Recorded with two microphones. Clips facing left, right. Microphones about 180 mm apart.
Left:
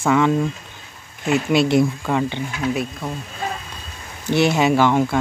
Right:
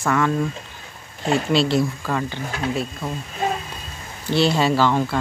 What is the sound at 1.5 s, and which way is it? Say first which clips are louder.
Speech: left 3 dB; 20° left (ahead or behind).